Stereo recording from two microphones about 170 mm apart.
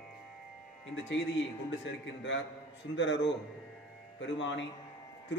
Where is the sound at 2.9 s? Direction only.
90° left.